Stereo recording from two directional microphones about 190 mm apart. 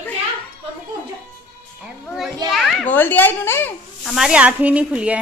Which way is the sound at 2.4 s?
Centre (ahead or behind).